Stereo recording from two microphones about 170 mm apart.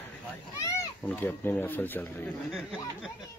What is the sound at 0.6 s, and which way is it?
Speech, 15° left (ahead or behind).